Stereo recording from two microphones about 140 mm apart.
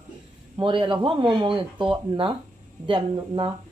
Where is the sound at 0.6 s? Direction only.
35° right (ahead or behind).